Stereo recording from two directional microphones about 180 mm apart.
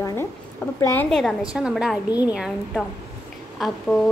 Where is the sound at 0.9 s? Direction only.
Centre (ahead or behind).